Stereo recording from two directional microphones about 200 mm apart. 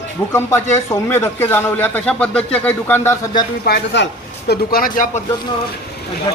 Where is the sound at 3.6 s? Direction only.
60° left (ahead or behind).